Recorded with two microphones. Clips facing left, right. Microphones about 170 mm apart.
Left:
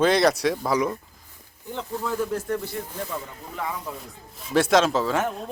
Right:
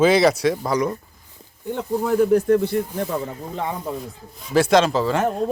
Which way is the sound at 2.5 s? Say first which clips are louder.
Right 11 dB; 60° right (ahead or behind).